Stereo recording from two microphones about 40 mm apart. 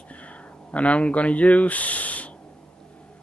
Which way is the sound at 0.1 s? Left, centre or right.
Left.